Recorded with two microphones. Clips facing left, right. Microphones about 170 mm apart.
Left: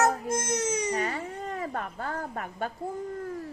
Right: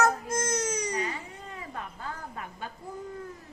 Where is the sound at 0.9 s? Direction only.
50° left (ahead or behind).